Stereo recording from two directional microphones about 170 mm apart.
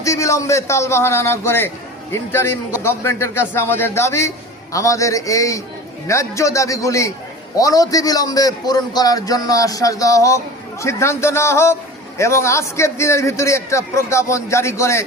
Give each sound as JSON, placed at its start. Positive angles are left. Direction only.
{"t": 0.0, "sound": "a man's voice", "side_deg": 20}